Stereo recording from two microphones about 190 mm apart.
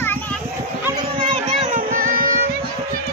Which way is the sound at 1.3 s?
40° right (ahead or behind).